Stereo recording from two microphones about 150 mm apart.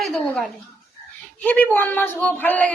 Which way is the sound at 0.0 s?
Centre (ahead or behind).